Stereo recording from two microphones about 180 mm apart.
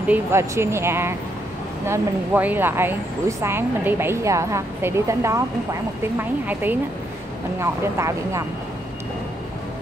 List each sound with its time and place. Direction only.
0.1 s speech: 15° right (ahead or behind)